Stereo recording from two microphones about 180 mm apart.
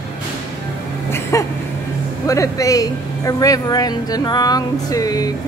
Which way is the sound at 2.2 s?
15° left (ahead or behind).